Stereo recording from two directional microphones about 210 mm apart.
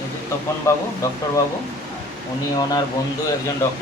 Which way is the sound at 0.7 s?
15° left (ahead or behind).